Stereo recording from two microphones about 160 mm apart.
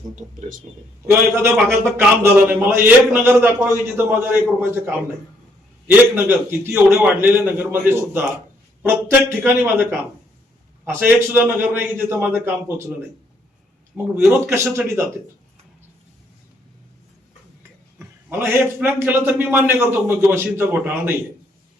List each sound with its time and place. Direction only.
0.2 s speech: 55° right (ahead or behind)
1.0 s a man's voice: 15° right (ahead or behind)
6.1 s a man's voice: 15° right (ahead or behind)
10.8 s a man's voice: 15° right (ahead or behind)
13.9 s a man's voice: 15° right (ahead or behind)
18.0 s a man's voice: 15° right (ahead or behind)